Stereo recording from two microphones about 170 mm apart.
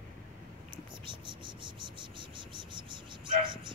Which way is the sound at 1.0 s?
30° right (ahead or behind).